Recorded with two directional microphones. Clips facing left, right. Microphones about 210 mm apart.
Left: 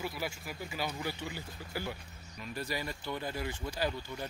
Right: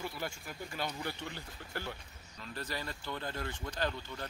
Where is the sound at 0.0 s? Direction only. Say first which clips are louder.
Left 2 dB; 5° left (ahead or behind).